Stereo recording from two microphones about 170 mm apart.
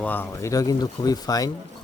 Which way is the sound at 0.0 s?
10° left (ahead or behind).